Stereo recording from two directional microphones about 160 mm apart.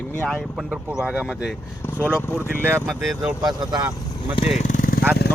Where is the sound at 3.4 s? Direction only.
25° right (ahead or behind).